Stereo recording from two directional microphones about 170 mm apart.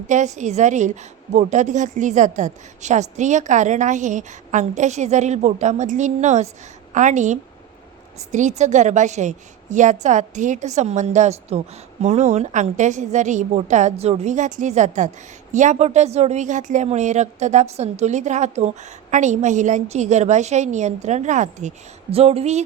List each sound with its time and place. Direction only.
0.1 s a woman's voice: 45° right (ahead or behind)